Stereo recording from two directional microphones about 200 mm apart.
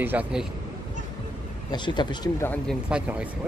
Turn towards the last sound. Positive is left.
turn(degrees=-5)  # may be behind; listen again after turning